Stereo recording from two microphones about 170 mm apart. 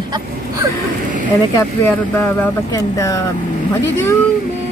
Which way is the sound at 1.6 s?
10° left (ahead or behind).